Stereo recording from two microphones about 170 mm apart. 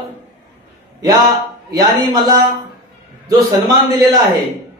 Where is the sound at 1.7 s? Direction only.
20° right (ahead or behind).